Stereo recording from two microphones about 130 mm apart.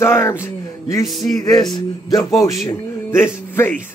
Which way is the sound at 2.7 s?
20° left (ahead or behind).